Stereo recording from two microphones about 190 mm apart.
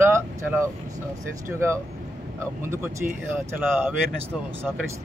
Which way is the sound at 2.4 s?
15° right (ahead or behind).